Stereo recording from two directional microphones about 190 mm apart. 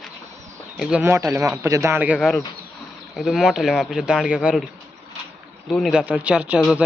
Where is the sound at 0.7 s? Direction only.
Centre (ahead or behind).